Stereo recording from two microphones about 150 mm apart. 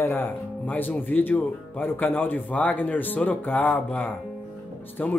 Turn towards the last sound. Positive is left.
turn(degrees=10)  # may be behind; listen again after turning